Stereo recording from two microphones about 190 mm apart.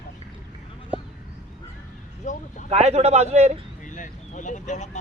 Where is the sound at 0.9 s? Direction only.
5° right (ahead or behind).